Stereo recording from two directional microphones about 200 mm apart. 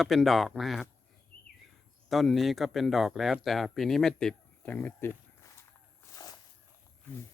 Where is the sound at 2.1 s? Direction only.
Centre (ahead or behind).